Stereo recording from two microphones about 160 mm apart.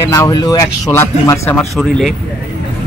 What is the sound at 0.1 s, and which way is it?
A man's voice, 20° left (ahead or behind).